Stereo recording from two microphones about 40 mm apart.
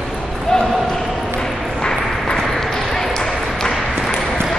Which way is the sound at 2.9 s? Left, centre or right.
Centre.